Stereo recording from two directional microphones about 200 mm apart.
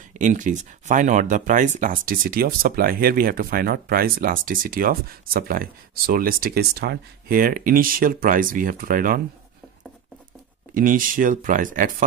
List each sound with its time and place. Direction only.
0.2 s speech: 40° right (ahead or behind)
10.7 s speech: 45° right (ahead or behind)